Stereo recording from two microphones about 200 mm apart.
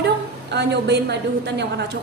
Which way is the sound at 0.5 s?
60° right (ahead or behind).